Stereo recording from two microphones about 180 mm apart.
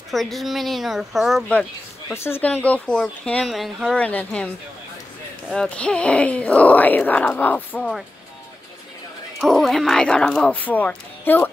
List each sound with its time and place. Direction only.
0.1 s speech: centre (ahead or behind)
5.5 s speech: 5° left (ahead or behind)
9.4 s speech: centre (ahead or behind)